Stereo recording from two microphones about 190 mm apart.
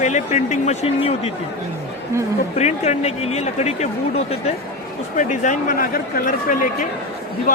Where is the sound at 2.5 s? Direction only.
35° left (ahead or behind).